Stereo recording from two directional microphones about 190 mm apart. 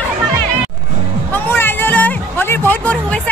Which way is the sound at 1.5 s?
10° left (ahead or behind).